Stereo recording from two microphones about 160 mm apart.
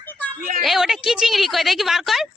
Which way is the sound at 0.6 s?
Centre (ahead or behind).